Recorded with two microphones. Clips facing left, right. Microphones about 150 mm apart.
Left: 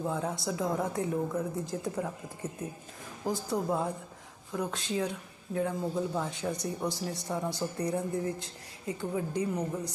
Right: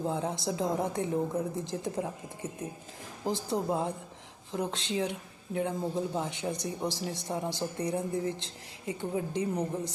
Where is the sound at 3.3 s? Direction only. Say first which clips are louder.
Even; 25° right (ahead or behind).